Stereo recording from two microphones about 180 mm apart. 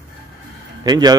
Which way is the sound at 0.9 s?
20° right (ahead or behind).